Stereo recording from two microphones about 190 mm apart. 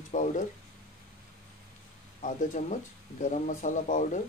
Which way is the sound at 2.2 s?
40° left (ahead or behind).